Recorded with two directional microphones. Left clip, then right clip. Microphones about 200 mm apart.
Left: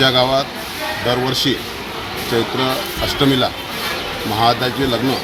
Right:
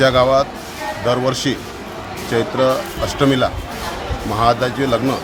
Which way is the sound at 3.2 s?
20° right (ahead or behind).